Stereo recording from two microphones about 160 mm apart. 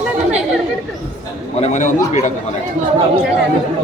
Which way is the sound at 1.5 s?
45° left (ahead or behind).